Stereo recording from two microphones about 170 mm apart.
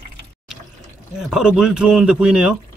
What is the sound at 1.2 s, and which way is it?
Speech, 5° right (ahead or behind).